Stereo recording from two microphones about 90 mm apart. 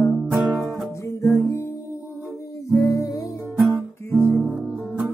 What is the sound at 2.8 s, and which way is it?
Music, 40° left (ahead or behind).